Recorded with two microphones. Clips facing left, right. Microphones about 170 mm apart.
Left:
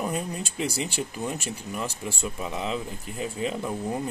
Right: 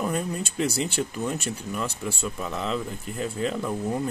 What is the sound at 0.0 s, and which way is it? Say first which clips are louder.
Speech: right 2 dB; 5° left (ahead or behind).